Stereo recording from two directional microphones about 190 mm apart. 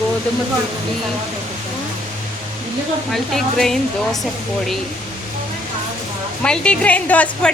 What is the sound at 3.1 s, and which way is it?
A woman's voice, centre (ahead or behind).